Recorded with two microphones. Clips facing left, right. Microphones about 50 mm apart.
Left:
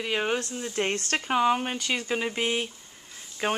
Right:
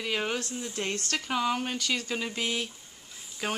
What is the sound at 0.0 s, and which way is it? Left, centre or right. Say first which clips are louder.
Speech: left 3 dB; centre.